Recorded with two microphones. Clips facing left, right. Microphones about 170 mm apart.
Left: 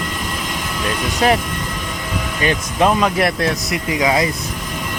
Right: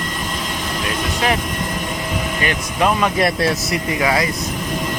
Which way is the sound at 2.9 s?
Centre (ahead or behind).